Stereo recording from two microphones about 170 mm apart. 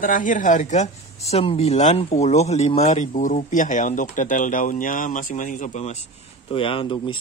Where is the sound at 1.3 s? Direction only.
35° left (ahead or behind).